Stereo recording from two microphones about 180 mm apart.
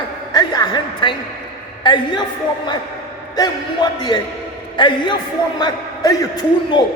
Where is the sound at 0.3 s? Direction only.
25° left (ahead or behind).